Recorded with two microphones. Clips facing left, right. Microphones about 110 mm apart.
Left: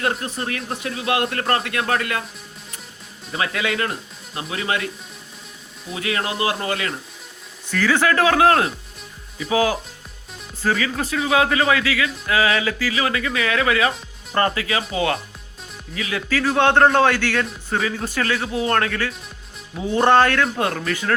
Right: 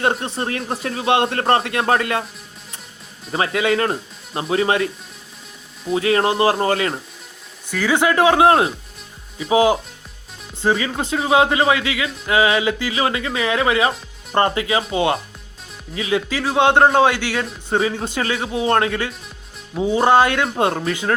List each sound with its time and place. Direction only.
0.0 s speech: 30° right (ahead or behind)
3.3 s speech: 30° right (ahead or behind)
5.9 s speech: 35° right (ahead or behind)
7.7 s a man's voice: 15° right (ahead or behind)
17.7 s speech: 25° right (ahead or behind)